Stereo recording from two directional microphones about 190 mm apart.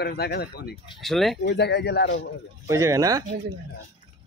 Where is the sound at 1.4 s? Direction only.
60° left (ahead or behind).